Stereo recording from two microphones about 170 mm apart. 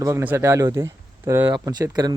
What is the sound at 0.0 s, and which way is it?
Speech, 15° right (ahead or behind).